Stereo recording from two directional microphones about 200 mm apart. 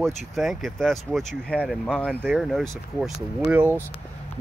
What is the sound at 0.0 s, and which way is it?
Speech, centre (ahead or behind).